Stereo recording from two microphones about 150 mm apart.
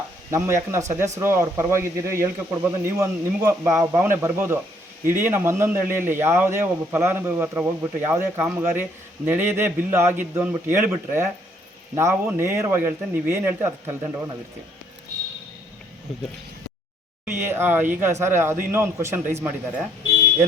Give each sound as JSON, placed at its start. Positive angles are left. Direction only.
{"t": 0.3, "sound": "a man's voice", "side_deg": -20}
{"t": 17.2, "sound": "a man's voice", "side_deg": -15}